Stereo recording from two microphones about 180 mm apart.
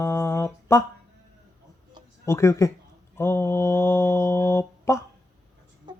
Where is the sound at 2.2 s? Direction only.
15° left (ahead or behind).